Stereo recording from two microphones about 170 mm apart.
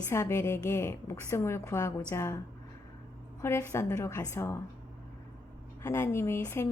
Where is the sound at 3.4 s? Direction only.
15° left (ahead or behind).